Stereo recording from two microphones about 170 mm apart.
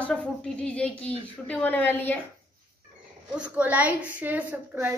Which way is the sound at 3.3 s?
5° right (ahead or behind).